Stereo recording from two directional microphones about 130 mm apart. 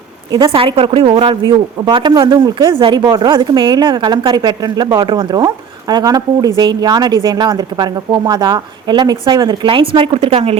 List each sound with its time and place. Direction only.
0.3 s a woman's voice: 40° right (ahead or behind)
10.2 s a woman's voice: 50° right (ahead or behind)